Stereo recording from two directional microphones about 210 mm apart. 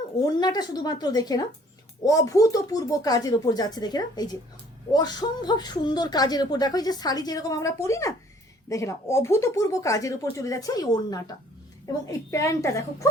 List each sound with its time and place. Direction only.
0.2 s a man's voice: 20° left (ahead or behind)